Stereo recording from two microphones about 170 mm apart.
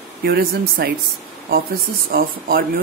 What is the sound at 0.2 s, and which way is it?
Speech, 65° right (ahead or behind).